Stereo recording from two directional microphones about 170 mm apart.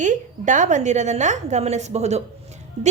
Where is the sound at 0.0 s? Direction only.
45° right (ahead or behind).